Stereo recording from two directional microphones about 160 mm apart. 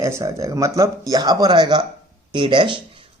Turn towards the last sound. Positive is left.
turn(degrees=-30)  # may be behind; listen again after turning